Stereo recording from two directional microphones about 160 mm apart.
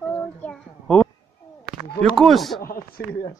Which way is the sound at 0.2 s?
10° left (ahead or behind).